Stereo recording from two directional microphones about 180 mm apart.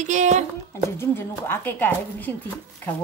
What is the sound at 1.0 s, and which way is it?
Speech, 15° left (ahead or behind).